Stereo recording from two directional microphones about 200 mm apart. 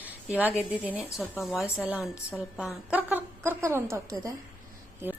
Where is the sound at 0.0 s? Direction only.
10° right (ahead or behind).